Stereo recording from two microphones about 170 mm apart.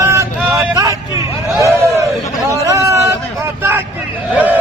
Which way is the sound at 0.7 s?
20° right (ahead or behind).